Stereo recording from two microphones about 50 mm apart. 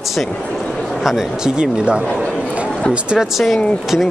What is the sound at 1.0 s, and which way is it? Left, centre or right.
Speech, centre.